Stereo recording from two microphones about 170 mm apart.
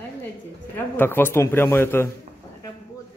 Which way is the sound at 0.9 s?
15° left (ahead or behind).